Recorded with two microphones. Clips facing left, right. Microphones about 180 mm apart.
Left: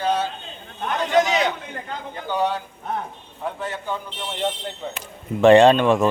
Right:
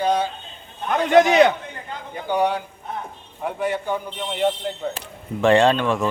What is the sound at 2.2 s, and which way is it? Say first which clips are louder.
Speech: right 2 dB; 15° right (ahead or behind).